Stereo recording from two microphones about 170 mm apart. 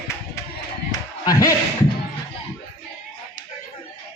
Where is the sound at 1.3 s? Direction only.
20° left (ahead or behind).